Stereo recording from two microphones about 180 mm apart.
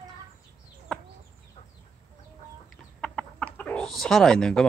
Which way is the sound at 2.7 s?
5° left (ahead or behind).